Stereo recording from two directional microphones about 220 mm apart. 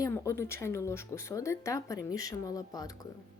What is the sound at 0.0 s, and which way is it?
Speech, 15° left (ahead or behind).